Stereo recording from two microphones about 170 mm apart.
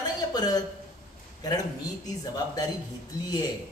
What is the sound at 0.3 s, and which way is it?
A man's voice, 25° left (ahead or behind).